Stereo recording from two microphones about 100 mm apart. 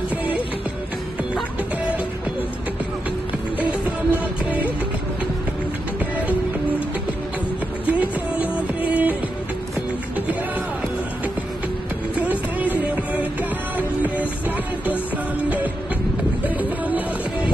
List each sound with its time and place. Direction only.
4.1 s music: 15° right (ahead or behind)
7.8 s music: 15° right (ahead or behind)
12.2 s music: 15° right (ahead or behind)
16.4 s music: 15° right (ahead or behind)